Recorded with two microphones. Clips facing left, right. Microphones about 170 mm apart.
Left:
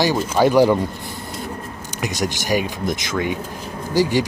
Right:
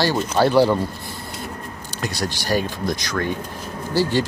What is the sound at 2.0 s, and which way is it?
Speech, 15° left (ahead or behind).